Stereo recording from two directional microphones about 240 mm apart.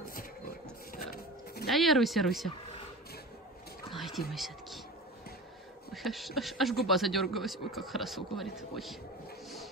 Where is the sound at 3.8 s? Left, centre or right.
Centre.